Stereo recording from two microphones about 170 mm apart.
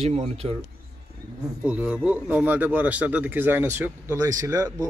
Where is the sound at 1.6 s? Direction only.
5° right (ahead or behind).